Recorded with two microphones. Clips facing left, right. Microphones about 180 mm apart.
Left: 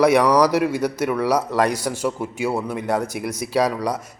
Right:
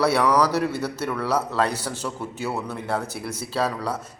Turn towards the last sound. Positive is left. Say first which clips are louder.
# left 5 dB
turn(degrees=15)  # may be behind; listen again after turning